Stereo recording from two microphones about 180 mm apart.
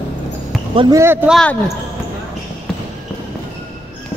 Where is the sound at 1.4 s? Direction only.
5° left (ahead or behind).